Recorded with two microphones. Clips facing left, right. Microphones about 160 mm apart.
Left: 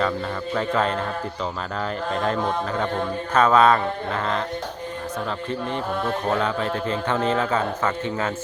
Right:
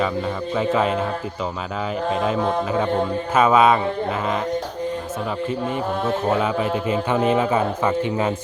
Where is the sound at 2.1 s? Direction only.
5° right (ahead or behind).